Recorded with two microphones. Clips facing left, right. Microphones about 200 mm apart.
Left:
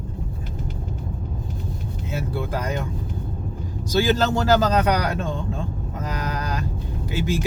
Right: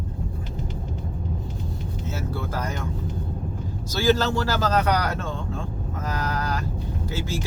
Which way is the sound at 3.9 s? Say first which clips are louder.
Left 1 dB; 20° left (ahead or behind).